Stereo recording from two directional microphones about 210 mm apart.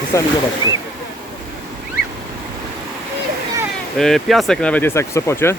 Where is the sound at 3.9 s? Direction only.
Centre (ahead or behind).